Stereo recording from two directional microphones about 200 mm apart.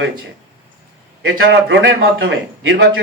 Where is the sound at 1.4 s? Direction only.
65° right (ahead or behind).